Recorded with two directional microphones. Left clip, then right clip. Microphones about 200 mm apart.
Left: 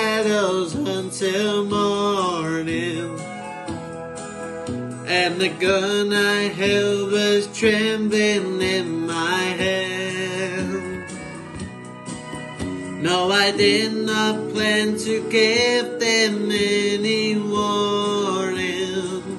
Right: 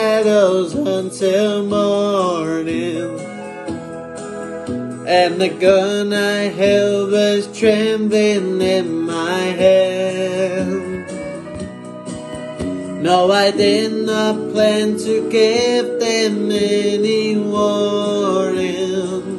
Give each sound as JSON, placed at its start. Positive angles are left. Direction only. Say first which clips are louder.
{"t": 0.0, "sound": "music", "louder": "right 7 dB", "side_deg": 10}
{"t": 5.0, "sound": "music", "louder": "right 6 dB", "side_deg": -30}
{"t": 5.6, "sound": "music", "louder": "right 7 dB", "side_deg": 15}
{"t": 10.5, "sound": "music", "louder": "right 6 dB", "side_deg": -35}
{"t": 13.0, "sound": "music", "louder": "right 7 dB", "side_deg": 10}
{"t": 13.3, "sound": "mantra", "louder": "right 4 dB", "side_deg": -35}
{"t": 14.1, "sound": "music", "louder": "right 5 dB", "side_deg": 10}